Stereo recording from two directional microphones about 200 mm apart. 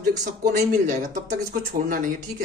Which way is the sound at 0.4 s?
40° right (ahead or behind).